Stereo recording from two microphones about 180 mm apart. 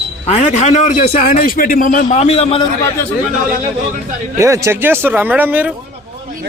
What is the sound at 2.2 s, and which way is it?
Speech, 35° left (ahead or behind).